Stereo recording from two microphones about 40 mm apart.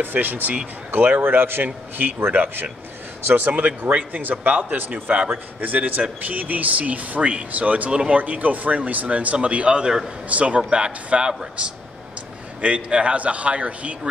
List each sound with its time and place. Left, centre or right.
0.0 s speech: right
0.9 s speech: right
1.2 s a man's voice: right
3.3 s speech: right
10.3 s a man's voice: right